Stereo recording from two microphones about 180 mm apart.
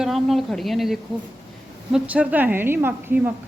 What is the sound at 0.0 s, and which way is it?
A woman's voice, centre (ahead or behind).